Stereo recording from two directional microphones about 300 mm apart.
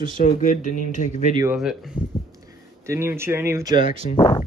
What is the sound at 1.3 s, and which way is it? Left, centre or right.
Speech, centre.